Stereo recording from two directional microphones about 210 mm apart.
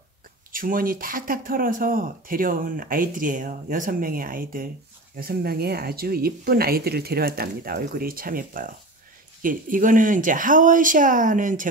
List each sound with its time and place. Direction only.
0.5 s speech: 40° right (ahead or behind)